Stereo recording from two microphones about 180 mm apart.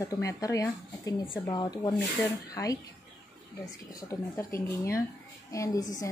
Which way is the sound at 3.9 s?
15° left (ahead or behind).